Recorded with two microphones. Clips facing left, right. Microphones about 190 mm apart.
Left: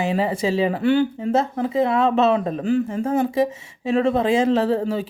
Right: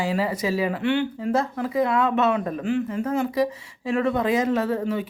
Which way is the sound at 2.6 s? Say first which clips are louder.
Left 3 dB; 35° left (ahead or behind).